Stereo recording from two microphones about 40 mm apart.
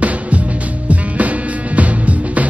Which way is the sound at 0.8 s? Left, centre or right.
Right.